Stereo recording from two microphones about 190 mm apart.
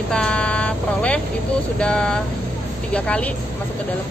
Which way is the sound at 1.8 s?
5° left (ahead or behind).